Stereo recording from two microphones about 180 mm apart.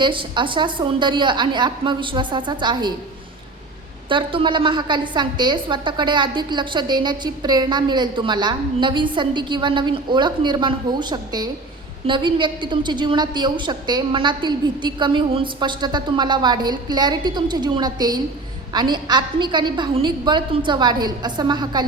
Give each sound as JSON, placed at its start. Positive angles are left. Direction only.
{"t": 0.0, "sound": "a woman's voice", "side_deg": -25}
{"t": 4.1, "sound": "a woman's voice", "side_deg": -30}